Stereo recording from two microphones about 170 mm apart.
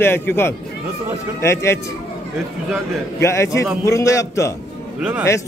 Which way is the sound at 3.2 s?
15° left (ahead or behind).